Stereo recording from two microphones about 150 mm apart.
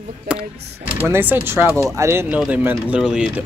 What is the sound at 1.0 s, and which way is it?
Speech, 15° right (ahead or behind).